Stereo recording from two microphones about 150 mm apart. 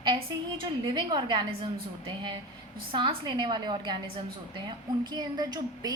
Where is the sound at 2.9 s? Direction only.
35° right (ahead or behind).